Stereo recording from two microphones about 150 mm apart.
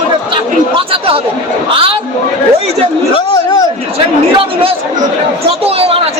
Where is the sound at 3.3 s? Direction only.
25° left (ahead or behind).